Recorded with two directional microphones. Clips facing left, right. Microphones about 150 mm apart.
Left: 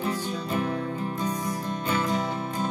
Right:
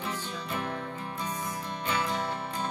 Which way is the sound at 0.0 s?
40° left (ahead or behind).